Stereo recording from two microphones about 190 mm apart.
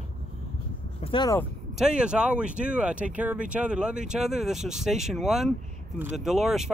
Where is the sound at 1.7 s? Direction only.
5° right (ahead or behind).